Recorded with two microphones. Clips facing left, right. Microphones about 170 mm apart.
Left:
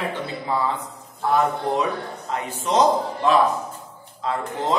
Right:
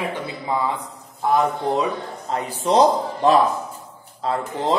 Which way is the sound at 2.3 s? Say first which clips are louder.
Right 4 dB; 35° right (ahead or behind).